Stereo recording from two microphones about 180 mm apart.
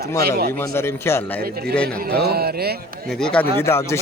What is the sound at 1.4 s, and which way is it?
Speech, 60° right (ahead or behind).